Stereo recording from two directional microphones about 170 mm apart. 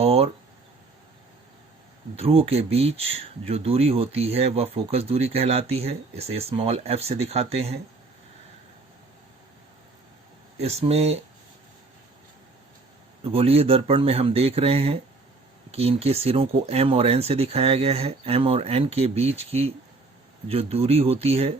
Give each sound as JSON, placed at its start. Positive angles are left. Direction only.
{"t": 0.0, "sound": "speech", "side_deg": -35}
{"t": 2.1, "sound": "speech", "side_deg": -35}
{"t": 10.6, "sound": "speech", "side_deg": -35}
{"t": 13.2, "sound": "speech", "side_deg": -35}